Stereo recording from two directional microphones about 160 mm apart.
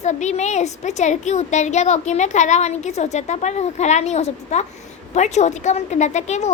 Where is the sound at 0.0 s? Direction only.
45° left (ahead or behind).